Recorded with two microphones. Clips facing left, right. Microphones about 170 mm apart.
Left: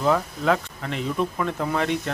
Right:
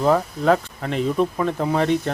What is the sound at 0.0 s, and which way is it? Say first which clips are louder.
Speech: right 4 dB; 40° right (ahead or behind).